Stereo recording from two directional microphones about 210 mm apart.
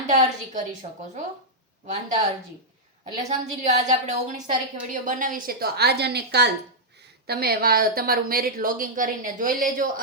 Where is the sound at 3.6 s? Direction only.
35° right (ahead or behind).